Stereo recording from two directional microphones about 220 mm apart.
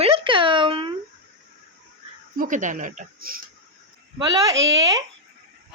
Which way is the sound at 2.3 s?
35° right (ahead or behind).